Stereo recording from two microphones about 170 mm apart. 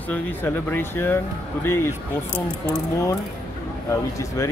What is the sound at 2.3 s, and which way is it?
Speech, 15° left (ahead or behind).